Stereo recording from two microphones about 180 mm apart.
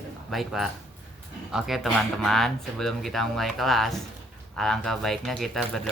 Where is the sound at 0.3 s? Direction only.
Centre (ahead or behind).